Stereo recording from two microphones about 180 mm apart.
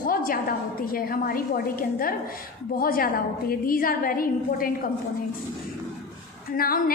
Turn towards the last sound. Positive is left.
turn(degrees=55)  # may be behind; listen again after turning